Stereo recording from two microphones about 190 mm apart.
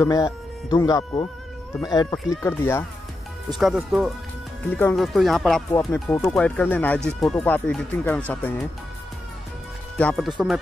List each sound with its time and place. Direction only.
0.0 s speech: 15° left (ahead or behind)
3.5 s speech: centre (ahead or behind)
4.6 s speech: 10° left (ahead or behind)
5.7 s speech: 15° left (ahead or behind)
9.9 s speech: 5° left (ahead or behind)